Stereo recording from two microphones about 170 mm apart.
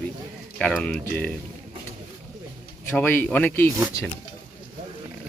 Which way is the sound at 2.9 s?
10° left (ahead or behind).